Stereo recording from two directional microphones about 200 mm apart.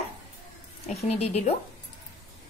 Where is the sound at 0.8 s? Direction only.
35° left (ahead or behind).